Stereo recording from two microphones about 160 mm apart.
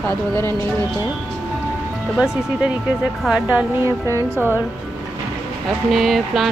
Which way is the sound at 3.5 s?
15° right (ahead or behind).